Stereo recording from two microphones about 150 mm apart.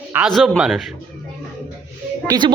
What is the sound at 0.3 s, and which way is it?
Speech, centre (ahead or behind).